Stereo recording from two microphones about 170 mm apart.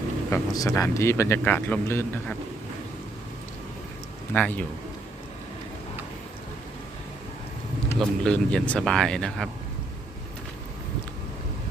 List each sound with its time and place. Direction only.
0.3 s a man's voice: 20° left (ahead or behind)
4.4 s a man's voice: 10° left (ahead or behind)
7.9 s speech: 5° left (ahead or behind)